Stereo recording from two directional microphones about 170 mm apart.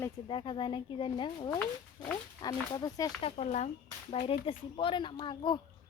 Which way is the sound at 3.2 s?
35° left (ahead or behind).